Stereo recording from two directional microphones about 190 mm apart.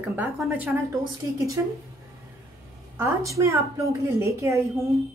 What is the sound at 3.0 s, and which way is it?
Speech, 15° right (ahead or behind).